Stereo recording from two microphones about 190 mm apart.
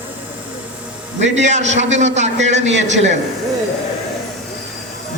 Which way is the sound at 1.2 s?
35° right (ahead or behind).